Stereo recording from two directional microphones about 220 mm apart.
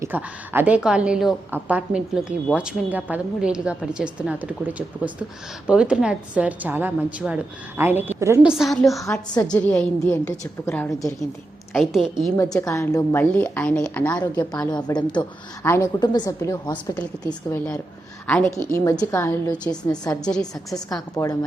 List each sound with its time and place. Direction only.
0.0 s a woman's voice: 10° right (ahead or behind)
9.3 s a woman's voice: 20° left (ahead or behind)
9.6 s a woman's voice: 10° left (ahead or behind)
11.7 s a woman's voice: centre (ahead or behind)
12.4 s a woman's voice: 15° left (ahead or behind)
14.7 s a woman's voice: 20° left (ahead or behind)